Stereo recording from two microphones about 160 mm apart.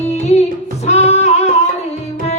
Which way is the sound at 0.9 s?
40° left (ahead or behind).